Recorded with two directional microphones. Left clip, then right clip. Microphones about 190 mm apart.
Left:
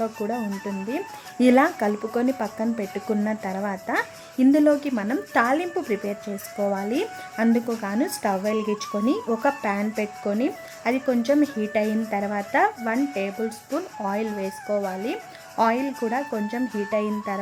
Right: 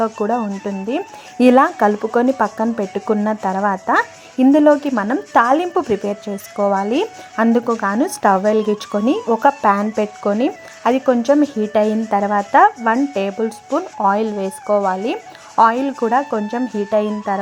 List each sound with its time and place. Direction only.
0.0 s speech: centre (ahead or behind)
0.9 s speech: 10° right (ahead or behind)
9.2 s speech: centre (ahead or behind)
10.0 s speech: 15° right (ahead or behind)
13.4 s speech: 5° right (ahead or behind)
14.0 s speech: 15° right (ahead or behind)
16.7 s speech: 10° right (ahead or behind)